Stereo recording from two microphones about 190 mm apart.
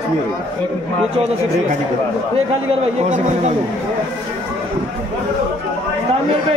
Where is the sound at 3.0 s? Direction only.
40° right (ahead or behind).